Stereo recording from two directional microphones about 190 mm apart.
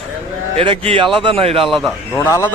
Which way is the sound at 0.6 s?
30° right (ahead or behind).